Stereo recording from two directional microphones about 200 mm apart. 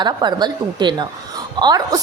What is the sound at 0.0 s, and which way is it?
A woman's voice, 20° right (ahead or behind).